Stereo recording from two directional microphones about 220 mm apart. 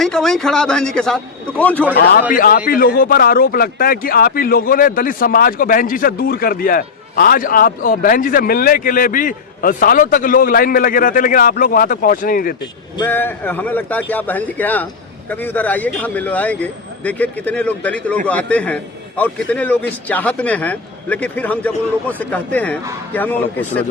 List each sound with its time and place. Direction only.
0.0 s a man's voice: centre (ahead or behind)
2.3 s a man's voice: 40° left (ahead or behind)
13.0 s a man's voice: 10° left (ahead or behind)